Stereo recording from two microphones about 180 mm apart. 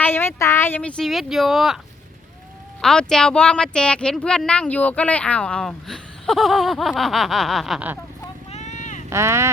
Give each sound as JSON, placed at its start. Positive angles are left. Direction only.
{"t": 0.0, "sound": "speech", "side_deg": 10}
{"t": 2.8, "sound": "speech", "side_deg": 5}
{"t": 8.4, "sound": "vehicle", "side_deg": 40}
{"t": 9.0, "sound": "speech", "side_deg": -15}